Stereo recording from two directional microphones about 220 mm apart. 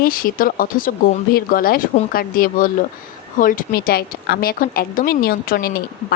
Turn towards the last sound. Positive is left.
turn(degrees=45)  # may be behind; listen again after turning